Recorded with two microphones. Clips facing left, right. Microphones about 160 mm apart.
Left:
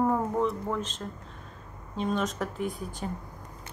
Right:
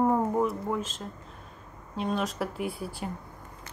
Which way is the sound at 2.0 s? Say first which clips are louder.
Even; centre (ahead or behind).